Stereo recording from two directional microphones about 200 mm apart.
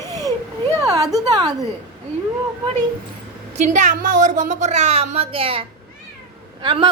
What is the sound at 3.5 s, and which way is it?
A woman's voice, 35° right (ahead or behind).